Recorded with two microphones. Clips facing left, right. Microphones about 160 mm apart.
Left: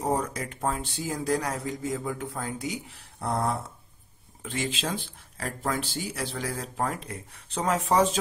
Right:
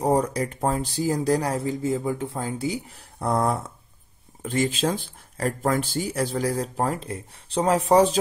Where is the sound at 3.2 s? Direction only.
45° right (ahead or behind).